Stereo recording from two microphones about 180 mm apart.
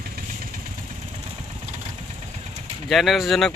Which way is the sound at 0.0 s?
50° right (ahead or behind).